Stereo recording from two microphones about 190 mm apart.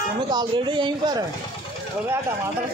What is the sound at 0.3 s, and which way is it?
Speech, 25° right (ahead or behind).